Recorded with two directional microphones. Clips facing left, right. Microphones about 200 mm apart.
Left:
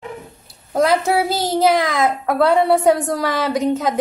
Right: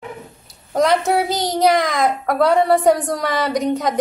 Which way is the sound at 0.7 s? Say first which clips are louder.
Even; centre (ahead or behind).